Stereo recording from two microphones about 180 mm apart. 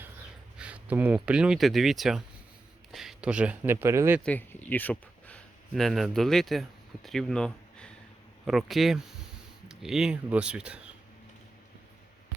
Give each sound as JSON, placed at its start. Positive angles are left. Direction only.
{"t": 0.6, "sound": "speech", "side_deg": -10}
{"t": 4.2, "sound": "speech", "side_deg": 10}